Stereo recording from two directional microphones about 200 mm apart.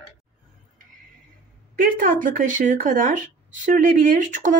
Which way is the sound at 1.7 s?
45° right (ahead or behind).